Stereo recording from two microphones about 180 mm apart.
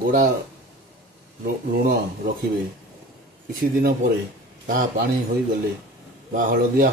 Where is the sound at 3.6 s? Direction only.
55° right (ahead or behind).